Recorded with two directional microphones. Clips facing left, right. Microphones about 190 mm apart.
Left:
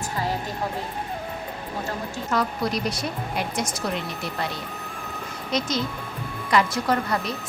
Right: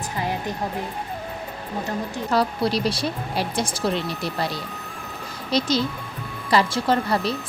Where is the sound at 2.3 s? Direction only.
30° right (ahead or behind).